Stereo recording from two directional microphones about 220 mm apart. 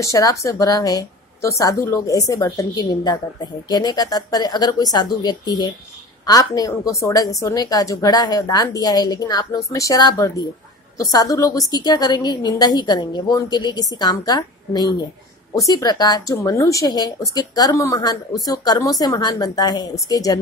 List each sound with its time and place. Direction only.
0.0 s a woman's voice: 15° left (ahead or behind)